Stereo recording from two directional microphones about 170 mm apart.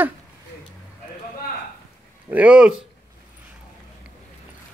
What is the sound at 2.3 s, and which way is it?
Speech, 10° right (ahead or behind).